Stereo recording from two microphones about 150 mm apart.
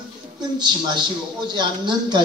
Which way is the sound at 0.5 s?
30° right (ahead or behind).